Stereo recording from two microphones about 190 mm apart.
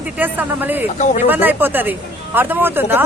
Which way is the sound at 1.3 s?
10° right (ahead or behind).